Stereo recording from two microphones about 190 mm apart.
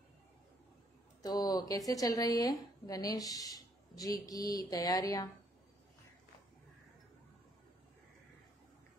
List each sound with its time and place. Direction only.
1.2 s a woman's voice: 20° left (ahead or behind)